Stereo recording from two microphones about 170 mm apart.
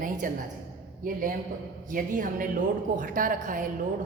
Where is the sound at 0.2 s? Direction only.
55° right (ahead or behind).